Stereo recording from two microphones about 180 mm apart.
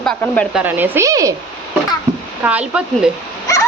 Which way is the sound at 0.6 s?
10° right (ahead or behind).